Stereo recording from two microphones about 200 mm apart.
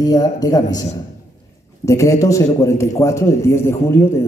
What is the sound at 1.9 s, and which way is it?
A man's voice, 15° left (ahead or behind).